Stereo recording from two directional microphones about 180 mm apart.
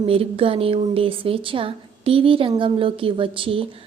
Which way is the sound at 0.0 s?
30° right (ahead or behind).